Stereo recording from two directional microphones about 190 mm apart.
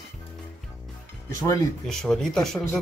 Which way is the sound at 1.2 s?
15° left (ahead or behind).